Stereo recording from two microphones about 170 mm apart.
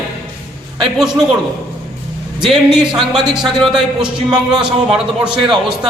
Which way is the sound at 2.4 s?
5° right (ahead or behind).